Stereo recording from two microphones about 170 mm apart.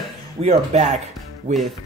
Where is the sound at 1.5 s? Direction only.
50° right (ahead or behind).